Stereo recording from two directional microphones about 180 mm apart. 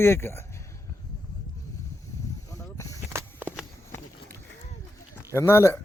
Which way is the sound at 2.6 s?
15° left (ahead or behind).